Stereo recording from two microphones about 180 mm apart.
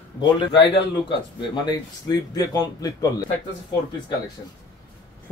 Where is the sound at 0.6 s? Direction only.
25° left (ahead or behind).